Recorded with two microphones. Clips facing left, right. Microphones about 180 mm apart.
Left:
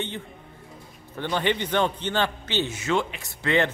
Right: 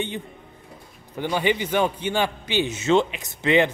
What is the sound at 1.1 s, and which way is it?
A man's voice, 10° right (ahead or behind).